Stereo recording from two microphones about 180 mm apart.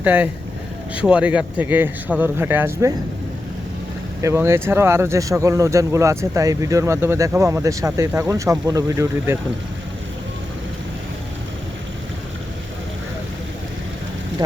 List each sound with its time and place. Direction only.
0.0 s speech: 10° right (ahead or behind)
4.2 s speech: 15° right (ahead or behind)